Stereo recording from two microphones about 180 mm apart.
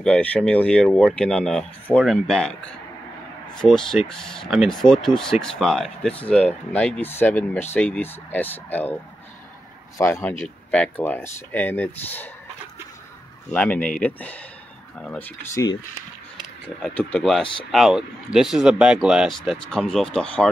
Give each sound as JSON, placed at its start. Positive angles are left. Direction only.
{"t": 0.0, "sound": "speech", "side_deg": 5}
{"t": 9.9, "sound": "speech", "side_deg": 15}
{"t": 13.5, "sound": "speech", "side_deg": 10}
{"t": 16.6, "sound": "speech", "side_deg": 5}